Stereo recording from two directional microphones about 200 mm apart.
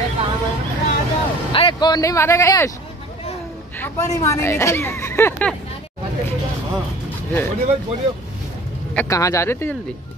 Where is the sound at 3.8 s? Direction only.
15° left (ahead or behind).